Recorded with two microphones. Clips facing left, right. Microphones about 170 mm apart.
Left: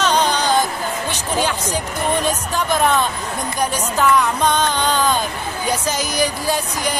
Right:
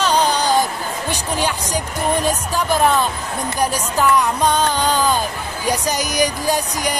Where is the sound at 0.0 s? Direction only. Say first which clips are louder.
Right 1 dB; 10° right (ahead or behind).